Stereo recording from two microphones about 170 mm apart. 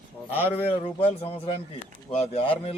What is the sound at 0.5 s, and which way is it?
A man's voice, 35° left (ahead or behind).